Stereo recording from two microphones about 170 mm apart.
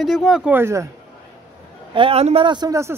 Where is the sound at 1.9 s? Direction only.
35° right (ahead or behind); by 3.0 s 15° right (ahead or behind).